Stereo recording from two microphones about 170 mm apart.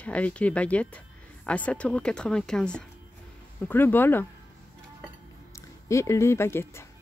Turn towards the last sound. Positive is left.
turn(degrees=15)  # may be behind; listen again after turning